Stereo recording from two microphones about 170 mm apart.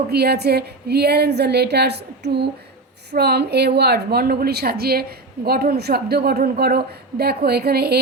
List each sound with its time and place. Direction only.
0.1 s a woman's voice: 70° right (ahead or behind)